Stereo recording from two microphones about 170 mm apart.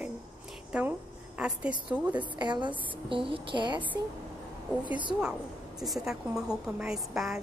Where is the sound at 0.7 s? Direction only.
10° right (ahead or behind).